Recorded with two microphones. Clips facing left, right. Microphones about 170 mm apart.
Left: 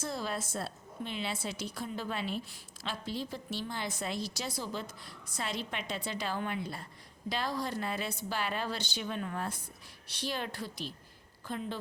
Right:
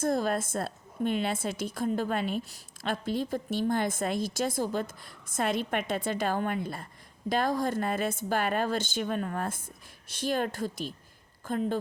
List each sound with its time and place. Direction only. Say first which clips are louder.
0.0 s a woman's voice: right 9 dB; 50° right (ahead or behind)